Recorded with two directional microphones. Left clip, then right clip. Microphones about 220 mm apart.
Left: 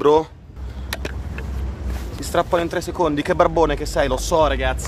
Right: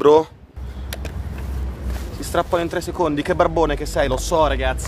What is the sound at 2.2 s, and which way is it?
Speech, 10° left (ahead or behind).